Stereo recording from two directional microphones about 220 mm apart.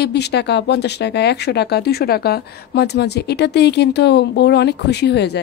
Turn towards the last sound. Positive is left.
turn(degrees=50)  # may be behind; listen again after turning